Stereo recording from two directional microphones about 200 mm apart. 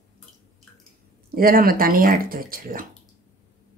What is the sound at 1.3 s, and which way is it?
Speech, 45° right (ahead or behind).